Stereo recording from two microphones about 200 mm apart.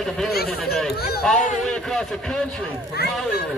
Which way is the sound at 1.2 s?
5° left (ahead or behind).